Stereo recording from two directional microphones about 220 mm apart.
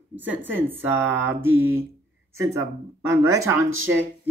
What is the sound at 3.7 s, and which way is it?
Speech, 65° right (ahead or behind).